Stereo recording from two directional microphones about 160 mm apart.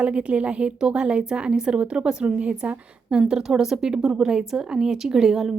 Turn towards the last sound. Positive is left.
turn(degrees=0)  # may be behind; listen again after turning